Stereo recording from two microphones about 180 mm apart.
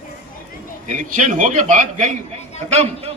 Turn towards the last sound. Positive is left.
turn(degrees=-35)  # may be behind; listen again after turning